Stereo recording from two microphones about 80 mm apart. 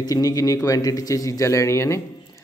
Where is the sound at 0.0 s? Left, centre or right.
Left.